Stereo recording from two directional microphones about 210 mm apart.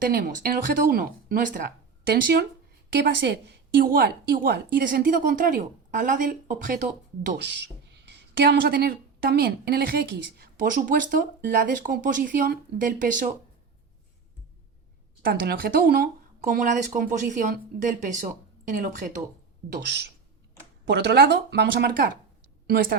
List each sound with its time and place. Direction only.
0.0 s speech: 45° right (ahead or behind)
2.9 s a woman's voice: 55° right (ahead or behind); by 7.3 s 40° right (ahead or behind)
7.4 s speech: 55° right (ahead or behind)
15.2 s a woman's voice: 45° right (ahead or behind)
19.8 s a woman's voice: 55° right (ahead or behind)